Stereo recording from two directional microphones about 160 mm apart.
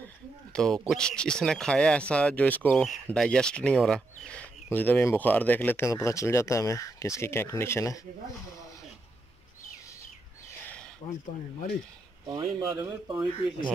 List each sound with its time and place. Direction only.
0.5 s speech: 5° left (ahead or behind)
12.3 s speech: 25° right (ahead or behind)